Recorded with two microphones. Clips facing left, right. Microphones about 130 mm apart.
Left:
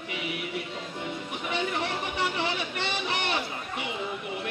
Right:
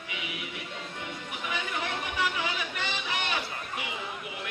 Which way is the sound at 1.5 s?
30° left (ahead or behind).